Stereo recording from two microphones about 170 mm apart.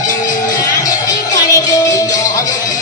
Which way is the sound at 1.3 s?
20° left (ahead or behind).